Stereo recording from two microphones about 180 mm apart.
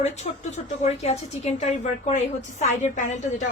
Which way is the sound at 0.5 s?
40° left (ahead or behind).